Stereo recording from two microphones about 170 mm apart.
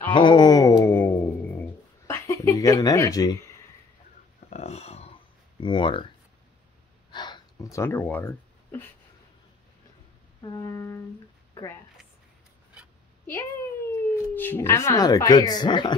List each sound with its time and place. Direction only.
0.1 s a sound: 25° left (ahead or behind)
4.5 s a sound: 40° left (ahead or behind)
5.6 s music: 30° left (ahead or behind)
7.1 s gasp: 25° left (ahead or behind)
10.4 s music: 20° left (ahead or behind)
13.8 s speech: 15° left (ahead or behind)